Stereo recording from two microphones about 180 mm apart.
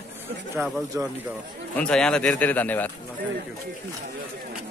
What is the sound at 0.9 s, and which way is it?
Speech, 15° right (ahead or behind).